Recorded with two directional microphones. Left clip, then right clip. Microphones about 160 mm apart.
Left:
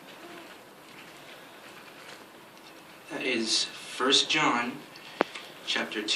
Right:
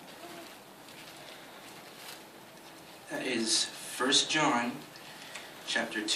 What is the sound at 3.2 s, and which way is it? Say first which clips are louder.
Speech: left 3 dB; 70° right (ahead or behind).